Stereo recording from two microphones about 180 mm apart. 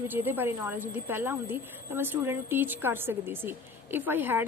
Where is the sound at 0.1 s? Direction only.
10° right (ahead or behind).